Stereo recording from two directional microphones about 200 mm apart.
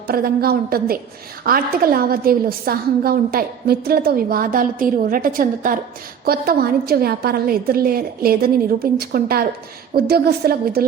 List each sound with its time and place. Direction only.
0.1 s a woman's voice: 50° right (ahead or behind)